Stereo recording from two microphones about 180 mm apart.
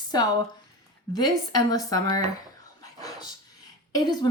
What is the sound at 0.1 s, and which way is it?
Speech, 20° left (ahead or behind).